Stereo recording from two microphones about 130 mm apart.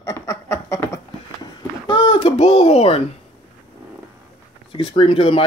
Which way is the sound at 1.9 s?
35° left (ahead or behind).